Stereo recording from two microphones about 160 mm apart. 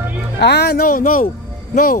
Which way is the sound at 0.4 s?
90° left.